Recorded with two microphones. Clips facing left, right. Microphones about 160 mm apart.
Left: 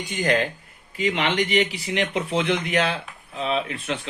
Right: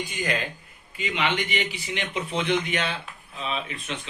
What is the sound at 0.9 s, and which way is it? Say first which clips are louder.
A man's voice: left 4 dB; 70° left (ahead or behind).